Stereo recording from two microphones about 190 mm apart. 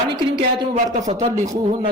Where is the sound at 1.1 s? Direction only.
15° right (ahead or behind).